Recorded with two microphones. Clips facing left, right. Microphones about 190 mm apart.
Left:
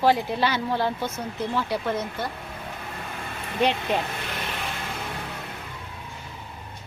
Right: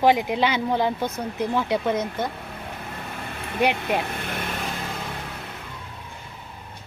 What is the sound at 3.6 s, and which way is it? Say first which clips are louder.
Speech: right 1 dB; 10° right (ahead or behind).